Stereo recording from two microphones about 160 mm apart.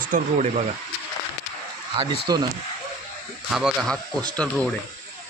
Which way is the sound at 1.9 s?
30° right (ahead or behind).